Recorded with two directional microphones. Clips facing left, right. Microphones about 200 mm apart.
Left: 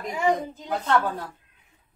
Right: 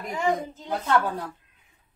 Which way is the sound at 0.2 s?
10° left (ahead or behind).